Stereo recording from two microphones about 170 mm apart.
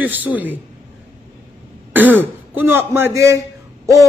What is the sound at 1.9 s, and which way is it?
A man's voice, 10° right (ahead or behind).